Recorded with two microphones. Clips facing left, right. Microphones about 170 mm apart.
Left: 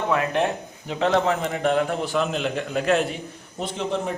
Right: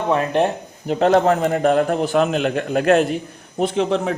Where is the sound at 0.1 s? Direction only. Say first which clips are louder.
Right 6 dB; 35° right (ahead or behind).